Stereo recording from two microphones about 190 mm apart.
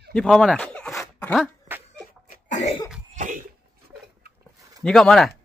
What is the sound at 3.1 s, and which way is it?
Cough, 40° right (ahead or behind).